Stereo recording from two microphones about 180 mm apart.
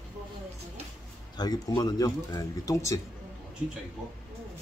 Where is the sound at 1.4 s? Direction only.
20° left (ahead or behind).